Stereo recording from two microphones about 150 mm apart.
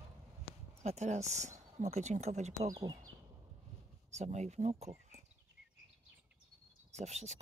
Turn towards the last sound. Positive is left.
turn(degrees=-50)  # may be behind; listen again after turning